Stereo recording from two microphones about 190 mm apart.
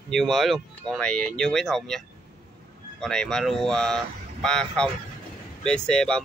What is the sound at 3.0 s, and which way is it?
Speech, 5° left (ahead or behind).